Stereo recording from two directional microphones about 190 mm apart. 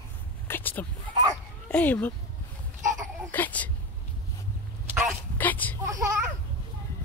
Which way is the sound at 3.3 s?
10° left (ahead or behind).